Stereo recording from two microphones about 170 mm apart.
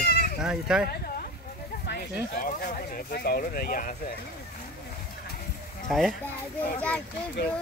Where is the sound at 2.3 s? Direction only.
55° left (ahead or behind).